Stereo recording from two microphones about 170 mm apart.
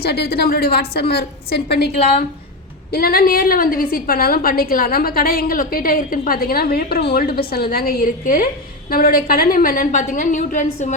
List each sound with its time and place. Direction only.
0.0 s a woman's voice: 70° left (ahead or behind)
2.9 s a woman's voice: 60° left (ahead or behind)